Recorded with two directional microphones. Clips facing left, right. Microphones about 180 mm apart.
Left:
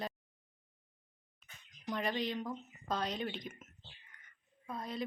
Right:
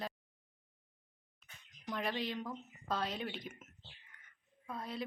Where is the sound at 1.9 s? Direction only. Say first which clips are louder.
Left 2 dB; centre (ahead or behind).